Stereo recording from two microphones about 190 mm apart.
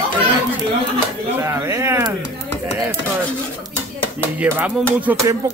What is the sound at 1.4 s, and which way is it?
Speech, 15° right (ahead or behind).